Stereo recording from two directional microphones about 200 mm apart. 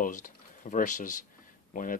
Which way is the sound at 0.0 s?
40° left (ahead or behind).